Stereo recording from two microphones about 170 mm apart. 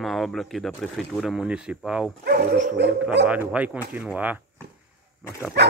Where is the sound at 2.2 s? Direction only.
60° right (ahead or behind).